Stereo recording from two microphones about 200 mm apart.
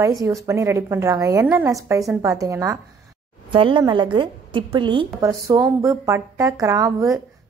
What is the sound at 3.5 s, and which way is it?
A woman's voice, 25° right (ahead or behind).